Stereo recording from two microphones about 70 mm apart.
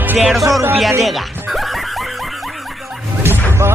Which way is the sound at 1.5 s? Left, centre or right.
Centre.